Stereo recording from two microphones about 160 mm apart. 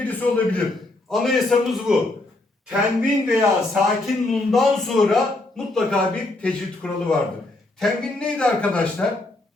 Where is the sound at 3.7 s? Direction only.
Centre (ahead or behind).